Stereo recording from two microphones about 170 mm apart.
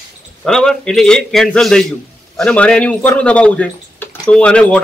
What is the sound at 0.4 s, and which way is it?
A man's voice, 5° left (ahead or behind).